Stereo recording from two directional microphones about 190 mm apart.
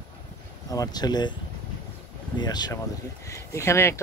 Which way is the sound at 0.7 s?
20° left (ahead or behind).